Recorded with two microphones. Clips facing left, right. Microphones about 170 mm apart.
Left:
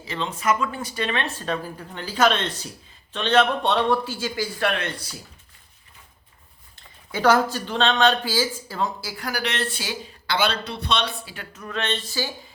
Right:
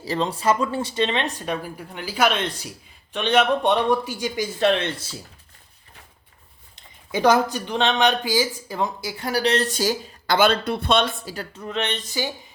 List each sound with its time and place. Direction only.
0.0 s speech: 35° right (ahead or behind)
6.7 s speech: 15° right (ahead or behind); by 11.6 s 40° right (ahead or behind)
11.6 s speech: 20° right (ahead or behind)